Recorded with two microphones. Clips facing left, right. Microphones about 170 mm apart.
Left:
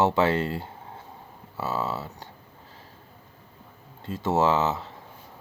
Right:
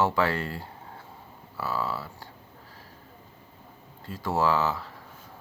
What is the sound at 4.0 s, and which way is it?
Speech, 20° left (ahead or behind).